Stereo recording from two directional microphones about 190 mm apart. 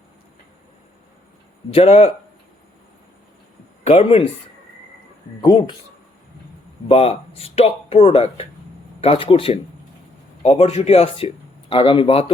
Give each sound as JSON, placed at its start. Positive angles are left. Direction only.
{"t": 1.7, "sound": "speech", "side_deg": 35}
{"t": 3.8, "sound": "speech", "side_deg": 30}
{"t": 5.4, "sound": "speech", "side_deg": 25}
{"t": 6.8, "sound": "speech", "side_deg": 30}